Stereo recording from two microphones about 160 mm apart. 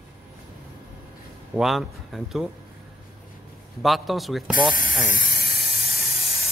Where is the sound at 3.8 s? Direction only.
Centre (ahead or behind).